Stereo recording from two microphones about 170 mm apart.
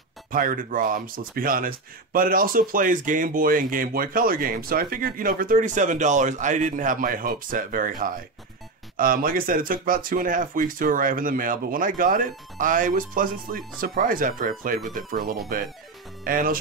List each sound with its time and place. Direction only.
0.3 s speech: 55° right (ahead or behind)